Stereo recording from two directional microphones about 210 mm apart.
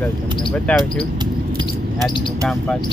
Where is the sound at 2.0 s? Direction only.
5° left (ahead or behind).